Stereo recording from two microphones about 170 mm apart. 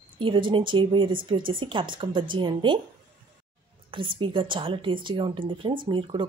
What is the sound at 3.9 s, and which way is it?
Speech, 30° right (ahead or behind).